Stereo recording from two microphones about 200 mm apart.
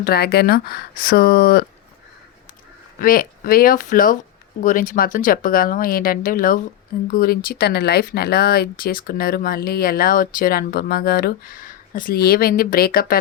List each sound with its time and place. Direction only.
0.0 s speech: 50° left (ahead or behind)
3.0 s speech: 45° left (ahead or behind)